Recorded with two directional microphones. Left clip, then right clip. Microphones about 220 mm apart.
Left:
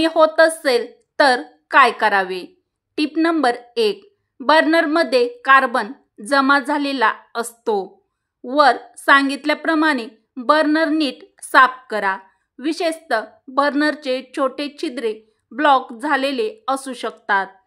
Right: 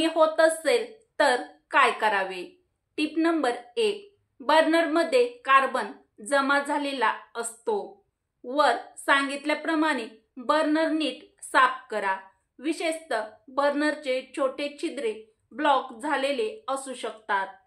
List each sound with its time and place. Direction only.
0.0 s a woman's voice: 45° left (ahead or behind)